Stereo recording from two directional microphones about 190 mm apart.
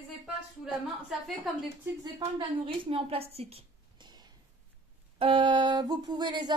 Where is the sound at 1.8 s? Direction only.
20° right (ahead or behind).